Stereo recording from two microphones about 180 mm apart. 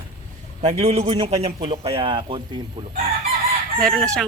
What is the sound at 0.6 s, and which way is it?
A man's voice, 35° right (ahead or behind).